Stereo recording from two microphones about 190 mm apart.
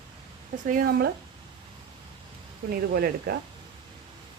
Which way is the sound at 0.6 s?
50° right (ahead or behind).